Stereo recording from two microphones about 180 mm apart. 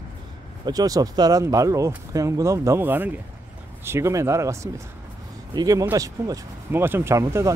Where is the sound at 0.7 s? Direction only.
20° right (ahead or behind).